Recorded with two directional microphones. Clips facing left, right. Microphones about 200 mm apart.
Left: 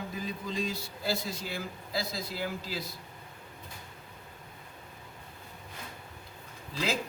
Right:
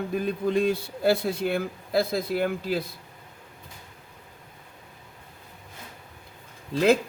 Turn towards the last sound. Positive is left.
turn(degrees=-55)  # may be behind; listen again after turning